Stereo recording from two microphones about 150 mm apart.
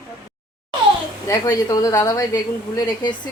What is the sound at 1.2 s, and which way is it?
Speech, 25° left (ahead or behind).